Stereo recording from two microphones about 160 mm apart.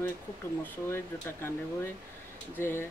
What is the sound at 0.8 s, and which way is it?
Speech, 15° left (ahead or behind).